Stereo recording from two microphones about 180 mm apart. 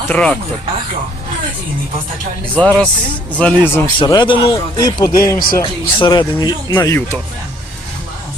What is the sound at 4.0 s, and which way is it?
Speech, 25° left (ahead or behind).